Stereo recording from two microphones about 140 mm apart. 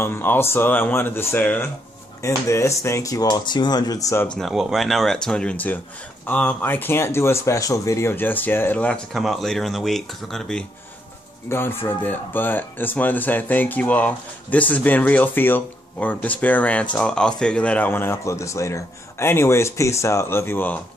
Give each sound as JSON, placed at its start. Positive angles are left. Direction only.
{"t": 0.0, "sound": "speech", "side_deg": 15}
{"t": 4.4, "sound": "speech", "side_deg": 0}
{"t": 11.4, "sound": "speech", "side_deg": 15}